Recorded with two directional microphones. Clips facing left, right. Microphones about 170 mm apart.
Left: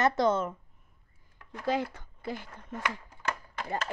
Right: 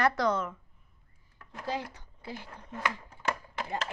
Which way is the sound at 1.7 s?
50° left (ahead or behind).